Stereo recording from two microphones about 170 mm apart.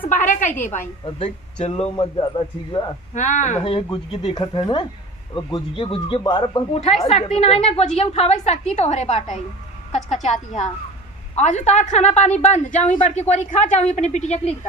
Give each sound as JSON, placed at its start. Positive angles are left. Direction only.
{"t": 0.1, "sound": "a sound", "side_deg": 50}
{"t": 0.7, "sound": "a woman's voice", "side_deg": 45}
{"t": 2.0, "sound": "speech", "side_deg": 25}
{"t": 3.2, "sound": "a woman's voice", "side_deg": 45}
{"t": 11.3, "sound": "a woman's voice", "side_deg": 45}